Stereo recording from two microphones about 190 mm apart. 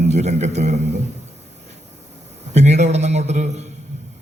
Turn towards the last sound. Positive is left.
turn(degrees=-35)  # may be behind; listen again after turning